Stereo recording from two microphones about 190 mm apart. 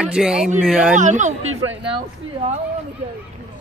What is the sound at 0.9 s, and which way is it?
Speech, 40° right (ahead or behind).